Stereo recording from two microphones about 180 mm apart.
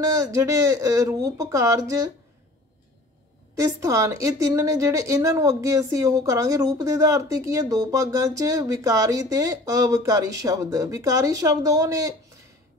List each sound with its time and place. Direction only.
0.0 s a woman's voice: 15° right (ahead or behind)
3.5 s a woman's voice: 15° right (ahead or behind)